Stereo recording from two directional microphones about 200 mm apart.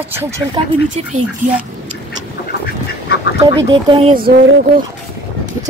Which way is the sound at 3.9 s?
25° right (ahead or behind).